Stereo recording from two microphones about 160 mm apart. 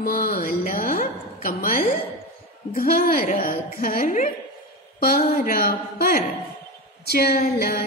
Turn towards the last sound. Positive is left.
turn(degrees=65)  # may be behind; listen again after turning